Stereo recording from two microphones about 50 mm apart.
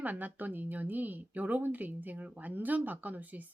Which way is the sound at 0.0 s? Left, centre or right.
Right.